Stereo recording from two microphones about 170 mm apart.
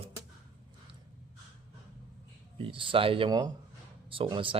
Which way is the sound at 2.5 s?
30° right (ahead or behind).